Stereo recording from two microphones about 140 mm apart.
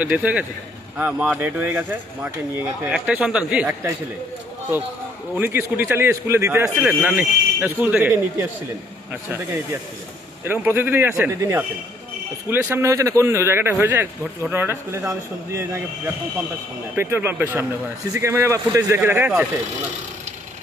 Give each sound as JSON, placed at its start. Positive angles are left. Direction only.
{"t": 0.0, "sound": "speech", "side_deg": -10}
{"t": 5.3, "sound": "speech", "side_deg": -15}
{"t": 16.9, "sound": "a man's voice", "side_deg": -15}